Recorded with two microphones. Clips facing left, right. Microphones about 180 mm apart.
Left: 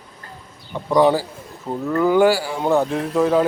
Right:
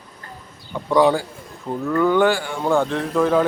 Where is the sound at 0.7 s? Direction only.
5° left (ahead or behind).